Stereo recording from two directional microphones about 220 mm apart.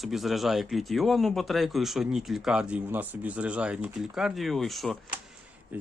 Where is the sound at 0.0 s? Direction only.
Centre (ahead or behind).